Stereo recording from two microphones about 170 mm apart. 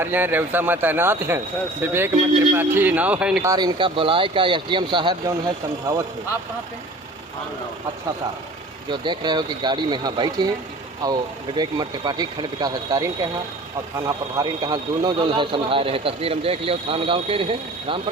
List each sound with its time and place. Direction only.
0.0 s a man's voice: 10° right (ahead or behind)
3.4 s speech: 20° right (ahead or behind)
8.9 s speech: 25° right (ahead or behind)
14.1 s speech: 20° right (ahead or behind)